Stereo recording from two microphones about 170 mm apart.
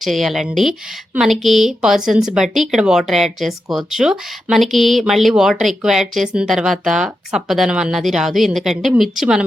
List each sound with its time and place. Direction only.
0.0 s speech: centre (ahead or behind)